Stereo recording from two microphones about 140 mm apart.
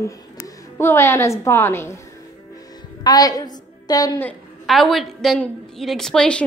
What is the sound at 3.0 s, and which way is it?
A woman's voice, 25° left (ahead or behind).